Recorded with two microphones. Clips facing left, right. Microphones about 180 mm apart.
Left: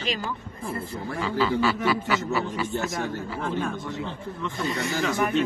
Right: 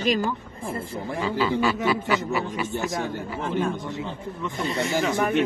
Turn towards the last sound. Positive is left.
turn(degrees=-25)  # may be behind; listen again after turning